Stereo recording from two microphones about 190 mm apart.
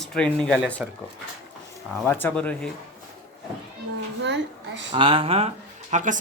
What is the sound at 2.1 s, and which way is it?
Speech, 10° left (ahead or behind).